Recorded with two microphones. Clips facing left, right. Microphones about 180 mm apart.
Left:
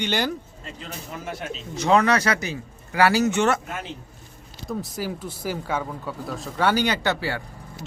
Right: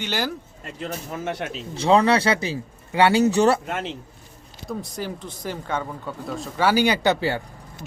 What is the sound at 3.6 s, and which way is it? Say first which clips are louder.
Speech: right 5 dB; 80° right.